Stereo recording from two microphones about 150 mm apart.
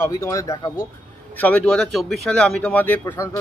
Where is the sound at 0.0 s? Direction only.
20° left (ahead or behind).